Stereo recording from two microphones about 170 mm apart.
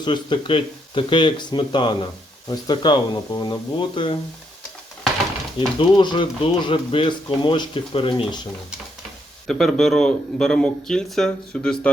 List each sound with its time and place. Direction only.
0.0 s speech: 25° left (ahead or behind)
5.5 s speech: 30° left (ahead or behind)
9.5 s a man's voice: 5° left (ahead or behind)